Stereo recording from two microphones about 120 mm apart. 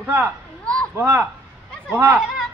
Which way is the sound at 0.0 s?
20° right (ahead or behind).